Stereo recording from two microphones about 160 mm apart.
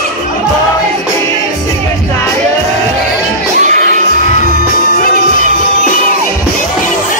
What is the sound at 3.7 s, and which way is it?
Music, 50° right (ahead or behind).